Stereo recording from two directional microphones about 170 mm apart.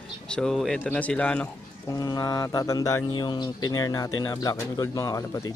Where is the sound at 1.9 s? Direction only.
20° left (ahead or behind).